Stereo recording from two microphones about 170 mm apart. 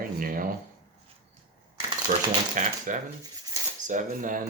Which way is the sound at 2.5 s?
50° right (ahead or behind).